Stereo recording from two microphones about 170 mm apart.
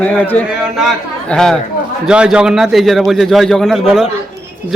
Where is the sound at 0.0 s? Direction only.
10° left (ahead or behind).